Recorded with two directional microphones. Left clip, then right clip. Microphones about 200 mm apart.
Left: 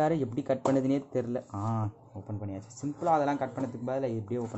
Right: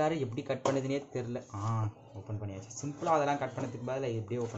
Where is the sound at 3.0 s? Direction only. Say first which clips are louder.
Left 2 dB; 60° left (ahead or behind).